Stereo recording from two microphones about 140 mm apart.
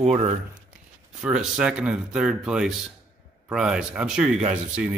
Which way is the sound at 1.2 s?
5° right (ahead or behind).